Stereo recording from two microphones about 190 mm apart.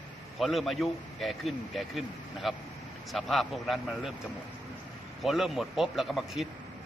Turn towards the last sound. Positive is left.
turn(degrees=0)  # may be behind; listen again after turning